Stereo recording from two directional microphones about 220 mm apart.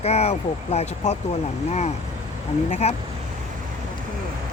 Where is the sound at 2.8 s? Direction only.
30° left (ahead or behind).